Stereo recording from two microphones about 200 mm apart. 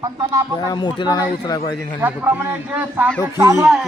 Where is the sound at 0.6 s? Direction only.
20° left (ahead or behind).